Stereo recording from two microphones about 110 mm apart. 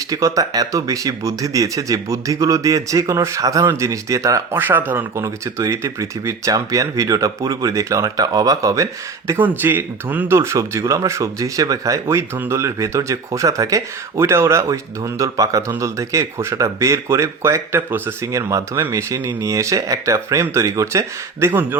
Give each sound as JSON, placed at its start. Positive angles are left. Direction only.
{"t": 0.1, "sound": "speech", "side_deg": -30}
{"t": 4.5, "sound": "speech", "side_deg": -20}